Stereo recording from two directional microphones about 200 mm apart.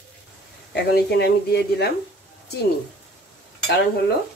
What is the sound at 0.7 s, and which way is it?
Speech, 55° left (ahead or behind).